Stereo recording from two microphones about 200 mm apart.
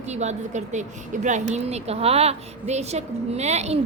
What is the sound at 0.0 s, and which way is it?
Speech, 35° right (ahead or behind).